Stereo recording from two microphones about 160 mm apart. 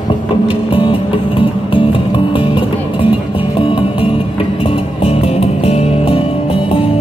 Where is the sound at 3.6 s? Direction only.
30° left (ahead or behind).